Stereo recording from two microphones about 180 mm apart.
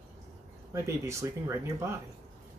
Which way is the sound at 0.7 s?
15° right (ahead or behind).